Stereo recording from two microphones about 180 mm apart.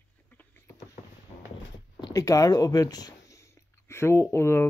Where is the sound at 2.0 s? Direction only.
20° left (ahead or behind).